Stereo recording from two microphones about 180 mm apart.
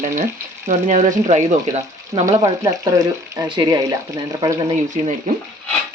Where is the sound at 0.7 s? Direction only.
45° right (ahead or behind).